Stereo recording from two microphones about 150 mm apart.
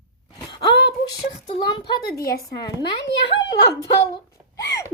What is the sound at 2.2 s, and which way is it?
Speech, 90° left.